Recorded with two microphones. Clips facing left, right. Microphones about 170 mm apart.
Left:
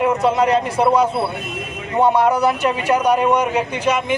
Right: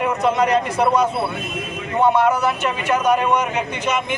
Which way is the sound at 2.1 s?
35° left (ahead or behind).